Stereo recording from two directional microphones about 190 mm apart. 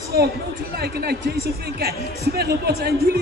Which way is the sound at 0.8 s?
55° right (ahead or behind).